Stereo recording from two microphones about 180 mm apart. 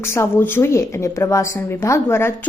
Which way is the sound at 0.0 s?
15° left (ahead or behind).